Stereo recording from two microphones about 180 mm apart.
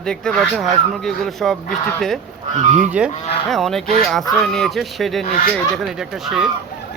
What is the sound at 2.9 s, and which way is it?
A man's voice, 5° right (ahead or behind).